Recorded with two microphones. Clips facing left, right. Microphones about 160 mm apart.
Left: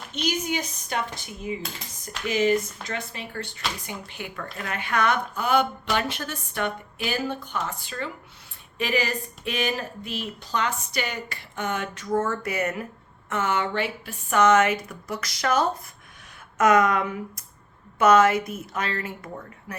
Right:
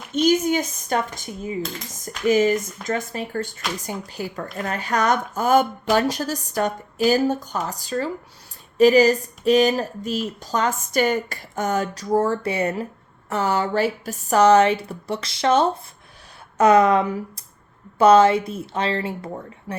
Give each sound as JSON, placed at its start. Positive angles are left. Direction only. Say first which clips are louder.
{"t": 0.1, "sound": "speech", "louder": "right 9 dB", "side_deg": -45}